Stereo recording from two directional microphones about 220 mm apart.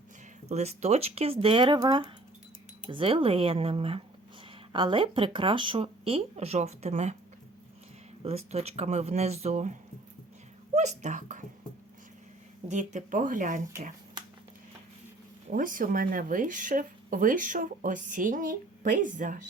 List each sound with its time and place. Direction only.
0.4 s speech: 30° right (ahead or behind)
8.2 s speech: 25° right (ahead or behind)
10.8 s speech: 30° right (ahead or behind)
12.6 s speech: 35° right (ahead or behind)
15.4 s speech: 40° right (ahead or behind)